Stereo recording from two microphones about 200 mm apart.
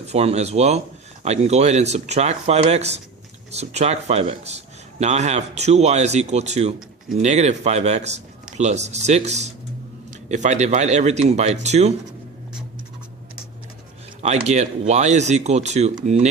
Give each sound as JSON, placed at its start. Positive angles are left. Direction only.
{"t": 0.1, "sound": "a man's voice", "side_deg": -30}
{"t": 14.2, "sound": "a man's voice", "side_deg": -35}